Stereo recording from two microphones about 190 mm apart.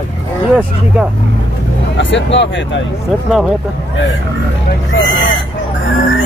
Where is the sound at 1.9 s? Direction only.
70° left (ahead or behind).